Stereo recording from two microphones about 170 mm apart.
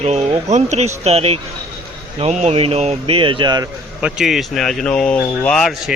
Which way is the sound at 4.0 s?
Centre (ahead or behind).